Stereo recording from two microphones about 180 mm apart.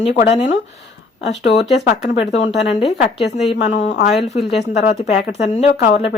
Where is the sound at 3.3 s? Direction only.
40° left (ahead or behind).